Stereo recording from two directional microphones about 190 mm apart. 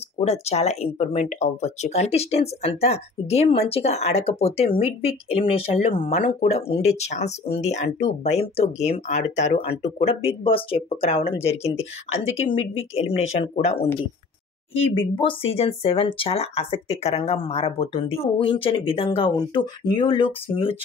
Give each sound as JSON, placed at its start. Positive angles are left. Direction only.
{"t": 0.2, "sound": "speech", "side_deg": 35}